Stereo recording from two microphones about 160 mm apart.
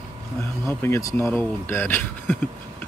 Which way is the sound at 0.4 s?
15° left (ahead or behind).